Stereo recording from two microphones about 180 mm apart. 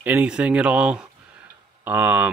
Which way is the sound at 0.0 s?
10° right (ahead or behind).